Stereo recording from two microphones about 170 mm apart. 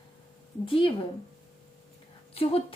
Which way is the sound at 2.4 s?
35° left (ahead or behind).